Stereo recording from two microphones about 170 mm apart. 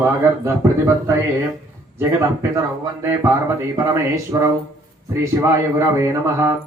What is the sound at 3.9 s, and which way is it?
A man's voice, 20° right (ahead or behind).